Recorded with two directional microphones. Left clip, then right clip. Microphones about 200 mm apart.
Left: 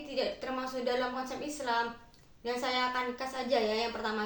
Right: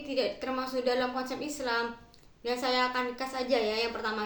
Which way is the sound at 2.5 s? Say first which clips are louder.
Right 3 dB; 20° right (ahead or behind).